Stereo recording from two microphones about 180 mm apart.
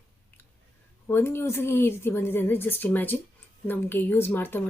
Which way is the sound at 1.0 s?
15° left (ahead or behind).